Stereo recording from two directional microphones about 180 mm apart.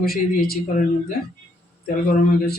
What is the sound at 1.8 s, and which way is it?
Speech, 50° left (ahead or behind).